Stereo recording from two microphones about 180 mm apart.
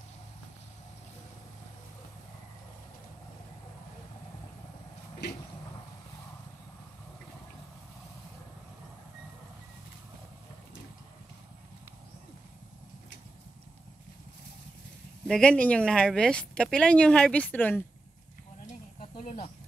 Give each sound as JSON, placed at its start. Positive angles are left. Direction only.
{"t": 15.2, "sound": "speech", "side_deg": 5}
{"t": 18.7, "sound": "snake", "side_deg": 45}